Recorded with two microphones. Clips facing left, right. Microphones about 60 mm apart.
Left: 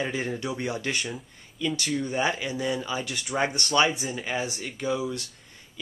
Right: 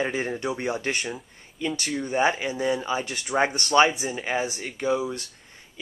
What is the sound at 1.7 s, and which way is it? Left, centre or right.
Speech, centre.